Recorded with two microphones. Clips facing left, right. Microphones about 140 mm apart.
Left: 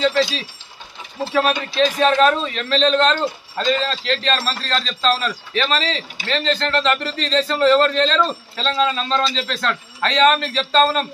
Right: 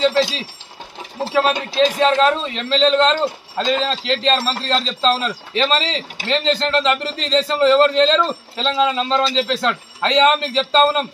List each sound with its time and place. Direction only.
0.0 s a man's voice: 25° right (ahead or behind)
2.0 s a man's voice: 20° right (ahead or behind)